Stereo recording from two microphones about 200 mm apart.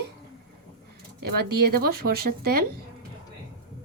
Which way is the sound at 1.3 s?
50° right (ahead or behind).